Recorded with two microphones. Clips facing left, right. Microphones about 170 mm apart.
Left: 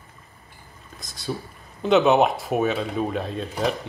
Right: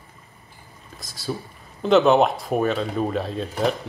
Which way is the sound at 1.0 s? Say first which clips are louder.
Right 1 dB; centre (ahead or behind).